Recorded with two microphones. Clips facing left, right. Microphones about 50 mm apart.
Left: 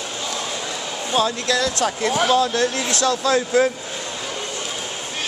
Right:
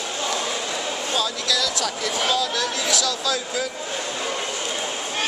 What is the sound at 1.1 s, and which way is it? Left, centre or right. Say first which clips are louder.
Speech: left 6 dB; left.